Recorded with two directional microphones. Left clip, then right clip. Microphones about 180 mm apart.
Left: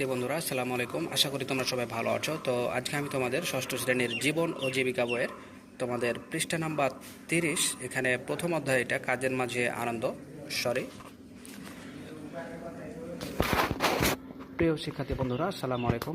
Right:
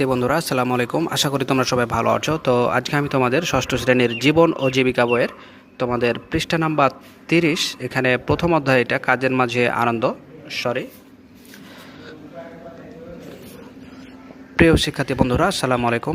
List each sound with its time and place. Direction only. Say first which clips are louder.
0.0 s a man's voice: right 12 dB; 45° right (ahead or behind)
10.5 s speech: right 7 dB; 30° right (ahead or behind)
14.5 s speech: right 14 dB; 90° right